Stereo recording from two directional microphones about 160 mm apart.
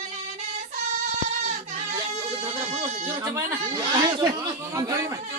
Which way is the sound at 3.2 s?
20° right (ahead or behind).